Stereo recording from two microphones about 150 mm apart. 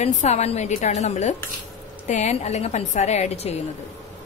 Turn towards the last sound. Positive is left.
turn(degrees=45)  # may be behind; listen again after turning